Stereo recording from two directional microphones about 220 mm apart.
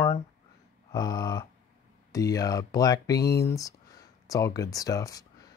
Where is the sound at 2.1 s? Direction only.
15° left (ahead or behind).